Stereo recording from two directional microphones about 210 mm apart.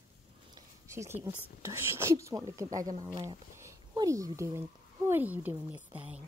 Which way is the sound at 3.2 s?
15° right (ahead or behind).